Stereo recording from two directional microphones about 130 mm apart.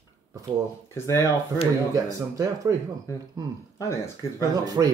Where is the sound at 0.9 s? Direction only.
20° left (ahead or behind).